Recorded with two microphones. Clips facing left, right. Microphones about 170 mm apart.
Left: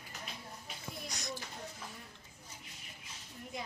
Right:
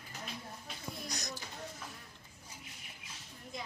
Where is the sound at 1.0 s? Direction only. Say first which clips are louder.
Left 2 dB; 40° right (ahead or behind).